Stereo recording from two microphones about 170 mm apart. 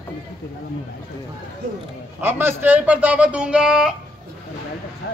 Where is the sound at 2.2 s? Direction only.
10° right (ahead or behind).